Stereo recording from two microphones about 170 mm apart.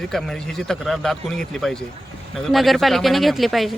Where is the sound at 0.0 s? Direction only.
Centre (ahead or behind).